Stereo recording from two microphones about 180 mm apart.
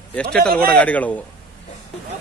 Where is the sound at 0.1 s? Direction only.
5° left (ahead or behind).